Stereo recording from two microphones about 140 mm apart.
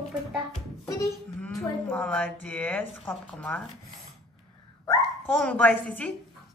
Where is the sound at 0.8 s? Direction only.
20° left (ahead or behind).